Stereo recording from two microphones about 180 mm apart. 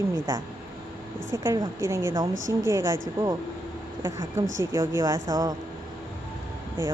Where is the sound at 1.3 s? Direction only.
15° right (ahead or behind).